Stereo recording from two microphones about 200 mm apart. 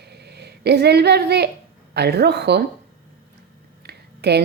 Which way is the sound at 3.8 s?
55° right (ahead or behind).